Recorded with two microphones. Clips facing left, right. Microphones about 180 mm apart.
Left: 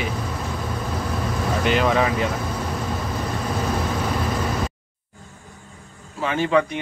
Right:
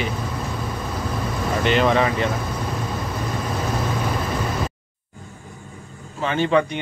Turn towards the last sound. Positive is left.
turn(degrees=5)  # may be behind; listen again after turning